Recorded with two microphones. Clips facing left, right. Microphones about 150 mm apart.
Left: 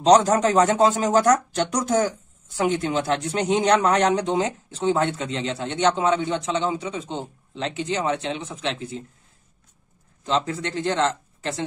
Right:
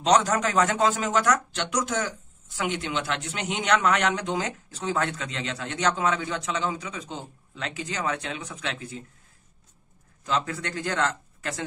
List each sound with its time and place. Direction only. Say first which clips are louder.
0.0 s speech: left 6 dB; 35° left (ahead or behind)
10.2 s speech: left 4 dB; 25° left (ahead or behind)